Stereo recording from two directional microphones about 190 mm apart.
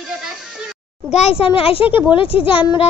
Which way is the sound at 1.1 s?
30° left (ahead or behind).